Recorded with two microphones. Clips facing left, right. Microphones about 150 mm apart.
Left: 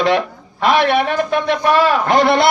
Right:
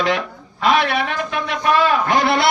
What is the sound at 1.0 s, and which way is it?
Speech, 40° left (ahead or behind).